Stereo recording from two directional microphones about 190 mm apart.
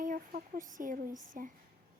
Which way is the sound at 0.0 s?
45° right (ahead or behind).